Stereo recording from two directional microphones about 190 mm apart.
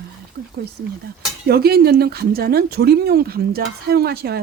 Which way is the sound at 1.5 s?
55° right (ahead or behind).